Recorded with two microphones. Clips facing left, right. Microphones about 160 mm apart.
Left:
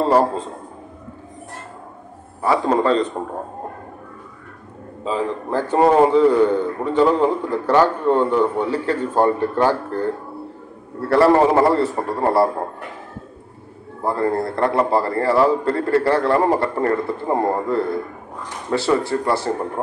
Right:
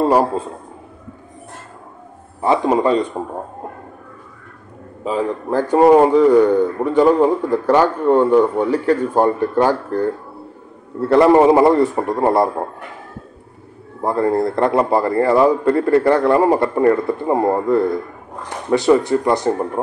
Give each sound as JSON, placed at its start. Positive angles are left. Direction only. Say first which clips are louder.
{"t": 0.1, "sound": "a man's voice", "louder": "right 1 dB", "side_deg": -10}
{"t": 2.4, "sound": "a man's voice", "louder": "right 2 dB", "side_deg": -20}
{"t": 5.0, "sound": "a man's voice", "louder": "right 2 dB", "side_deg": -15}
{"t": 14.0, "sound": "a man's voice", "louder": "right 3 dB", "side_deg": -20}